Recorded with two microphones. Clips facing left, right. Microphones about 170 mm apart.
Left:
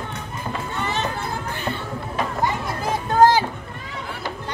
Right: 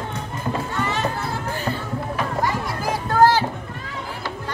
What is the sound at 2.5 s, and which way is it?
Children playing, 20° left (ahead or behind).